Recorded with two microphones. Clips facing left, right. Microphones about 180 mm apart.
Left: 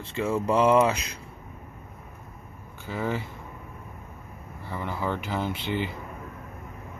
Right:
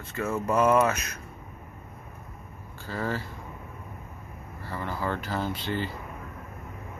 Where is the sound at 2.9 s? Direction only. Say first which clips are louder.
Left 2 dB; 15° left (ahead or behind).